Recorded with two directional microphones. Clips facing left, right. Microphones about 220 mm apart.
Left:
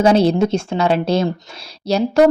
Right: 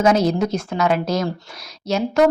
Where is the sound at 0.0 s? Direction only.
30° left (ahead or behind).